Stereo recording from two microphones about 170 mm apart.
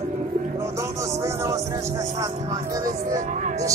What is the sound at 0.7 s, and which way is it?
Speech, 15° right (ahead or behind).